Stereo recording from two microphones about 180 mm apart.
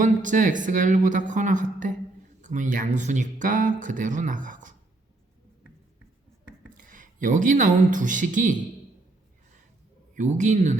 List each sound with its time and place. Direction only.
0.0 s speech: 45° right (ahead or behind)
6.7 s speech: 50° right (ahead or behind)
10.2 s speech: 40° right (ahead or behind)